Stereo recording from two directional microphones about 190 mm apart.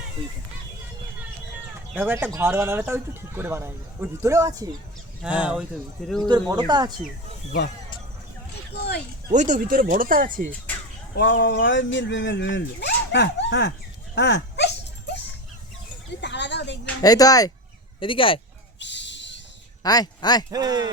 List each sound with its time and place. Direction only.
2.0 s speech: 10° right (ahead or behind)
5.2 s speech: 5° right (ahead or behind)
6.7 s speech: 20° right (ahead or behind)
8.7 s a sound: 60° left (ahead or behind)
9.3 s speech: 40° right (ahead or behind)
11.1 s speech: 75° left (ahead or behind)
14.2 s dog: 65° left (ahead or behind)
16.2 s a sound: 65° left (ahead or behind)
17.0 s speech: 20° left (ahead or behind)
18.8 s a sound: 70° left (ahead or behind)
19.8 s speech: 20° left (ahead or behind)
20.5 s speech: 20° right (ahead or behind)